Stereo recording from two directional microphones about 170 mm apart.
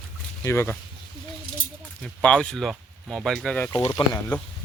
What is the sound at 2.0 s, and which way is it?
Speech, 5° left (ahead or behind).